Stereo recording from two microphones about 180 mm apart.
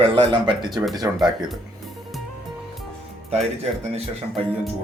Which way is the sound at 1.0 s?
15° right (ahead or behind).